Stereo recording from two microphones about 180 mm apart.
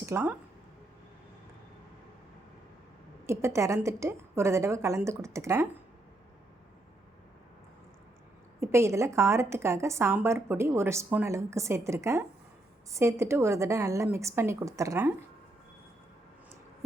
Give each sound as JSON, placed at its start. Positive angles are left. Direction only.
{"t": 0.0, "sound": "a woman's voice", "side_deg": -10}
{"t": 3.2, "sound": "a woman's voice", "side_deg": -15}
{"t": 8.6, "sound": "a woman's voice", "side_deg": -15}